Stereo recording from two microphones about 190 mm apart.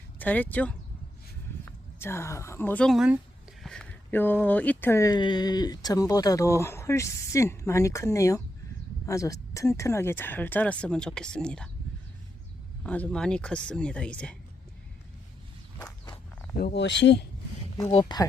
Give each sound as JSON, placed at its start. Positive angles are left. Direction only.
{"t": 0.2, "sound": "speech", "side_deg": 10}
{"t": 12.8, "sound": "speech", "side_deg": 5}
{"t": 16.6, "sound": "speech", "side_deg": 60}
{"t": 17.9, "sound": "speech", "side_deg": 20}